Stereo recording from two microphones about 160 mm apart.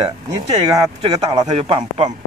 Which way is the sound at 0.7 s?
25° right (ahead or behind).